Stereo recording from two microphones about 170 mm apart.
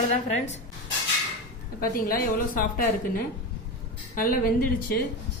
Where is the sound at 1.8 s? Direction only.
55° left (ahead or behind).